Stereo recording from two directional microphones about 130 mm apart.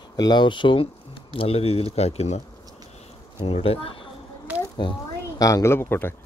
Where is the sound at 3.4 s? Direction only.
45° left (ahead or behind).